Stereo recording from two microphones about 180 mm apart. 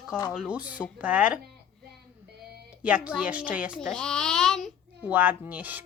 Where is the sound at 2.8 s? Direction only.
5° right (ahead or behind).